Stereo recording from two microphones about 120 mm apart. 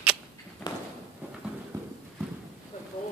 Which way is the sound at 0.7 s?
35° left (ahead or behind).